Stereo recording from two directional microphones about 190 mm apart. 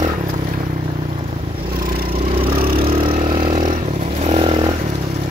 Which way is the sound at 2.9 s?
30° right (ahead or behind).